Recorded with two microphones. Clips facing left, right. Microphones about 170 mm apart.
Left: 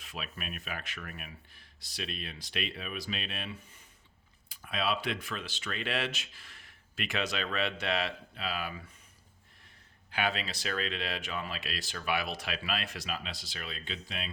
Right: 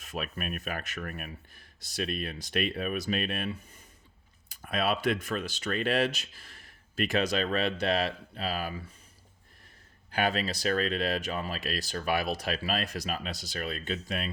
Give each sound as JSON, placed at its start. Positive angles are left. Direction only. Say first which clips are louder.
{"t": 0.0, "sound": "speech", "louder": "right 6 dB", "side_deg": -45}
{"t": 10.1, "sound": "speech", "louder": "right 4 dB", "side_deg": -40}